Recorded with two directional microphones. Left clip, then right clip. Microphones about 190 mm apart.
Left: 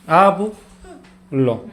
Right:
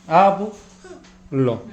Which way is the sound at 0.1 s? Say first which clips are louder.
Left 2 dB; 30° left (ahead or behind).